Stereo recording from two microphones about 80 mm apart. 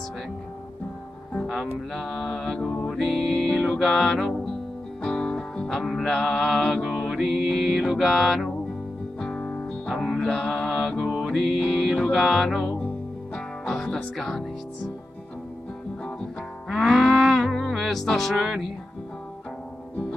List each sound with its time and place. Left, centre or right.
1.5 s music: centre
9.2 s music: centre
9.8 s music: centre
11.0 s music: centre
16.6 s music: centre